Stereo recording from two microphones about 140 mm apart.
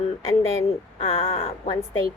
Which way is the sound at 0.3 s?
20° left (ahead or behind).